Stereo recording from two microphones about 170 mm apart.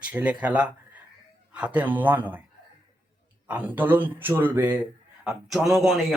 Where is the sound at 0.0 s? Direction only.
5° right (ahead or behind).